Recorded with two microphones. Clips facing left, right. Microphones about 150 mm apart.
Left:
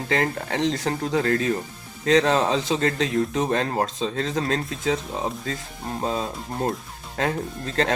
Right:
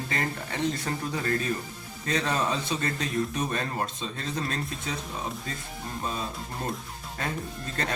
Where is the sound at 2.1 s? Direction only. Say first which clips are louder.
Left 9 dB; 90° left; by 3.7 s 75° left (ahead or behind).